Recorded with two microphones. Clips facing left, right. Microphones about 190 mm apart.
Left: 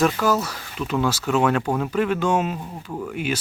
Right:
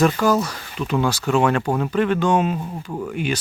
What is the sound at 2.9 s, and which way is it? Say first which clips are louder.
Speech: right 1 dB; 10° right (ahead or behind).